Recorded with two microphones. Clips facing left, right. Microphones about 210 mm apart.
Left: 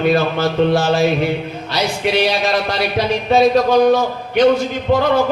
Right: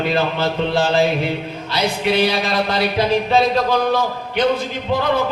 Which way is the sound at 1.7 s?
55° right (ahead or behind).